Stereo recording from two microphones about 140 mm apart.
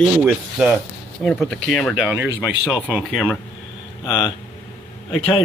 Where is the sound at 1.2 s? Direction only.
5° left (ahead or behind).